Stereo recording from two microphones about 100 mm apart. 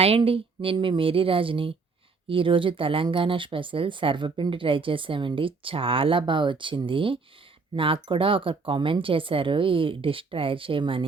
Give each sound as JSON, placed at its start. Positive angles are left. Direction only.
{"t": 0.2, "sound": "speech", "side_deg": -65}